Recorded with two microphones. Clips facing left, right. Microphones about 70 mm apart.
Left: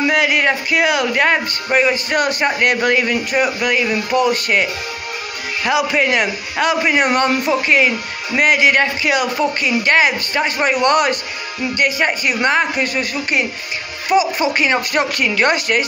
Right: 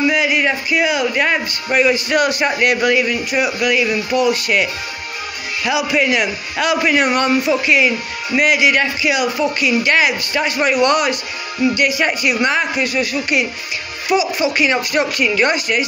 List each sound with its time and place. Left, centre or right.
0.0 s speech: left
1.7 s a man's voice: left
5.7 s a man's voice: left
6.8 s speech: left
7.1 s a man's voice: left